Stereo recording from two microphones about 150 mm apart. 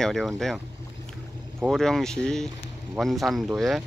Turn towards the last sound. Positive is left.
turn(degrees=0)  # may be behind; listen again after turning